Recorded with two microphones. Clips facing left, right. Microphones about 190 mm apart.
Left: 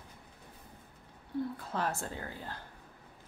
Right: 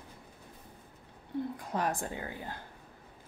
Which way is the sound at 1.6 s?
15° right (ahead or behind).